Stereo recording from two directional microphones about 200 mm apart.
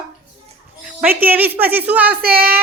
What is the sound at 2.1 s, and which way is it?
Speech, 50° right (ahead or behind).